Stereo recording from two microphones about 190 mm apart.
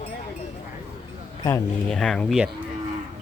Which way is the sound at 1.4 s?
15° left (ahead or behind).